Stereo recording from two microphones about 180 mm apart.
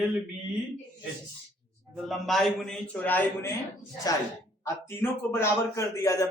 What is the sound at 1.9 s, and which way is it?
A man's voice, centre (ahead or behind).